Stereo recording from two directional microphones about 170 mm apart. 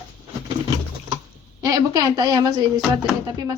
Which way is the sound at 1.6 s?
20° right (ahead or behind).